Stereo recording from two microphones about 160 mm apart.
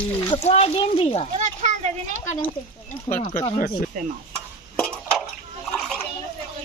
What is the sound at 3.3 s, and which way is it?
Speech, 40° left (ahead or behind).